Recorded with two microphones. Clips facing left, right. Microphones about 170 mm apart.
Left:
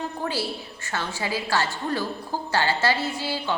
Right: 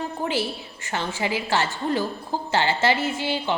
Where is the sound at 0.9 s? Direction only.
20° right (ahead or behind).